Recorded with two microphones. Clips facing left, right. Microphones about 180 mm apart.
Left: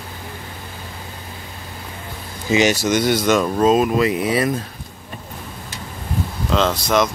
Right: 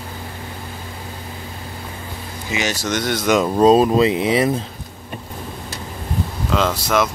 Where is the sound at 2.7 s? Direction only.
10° left (ahead or behind).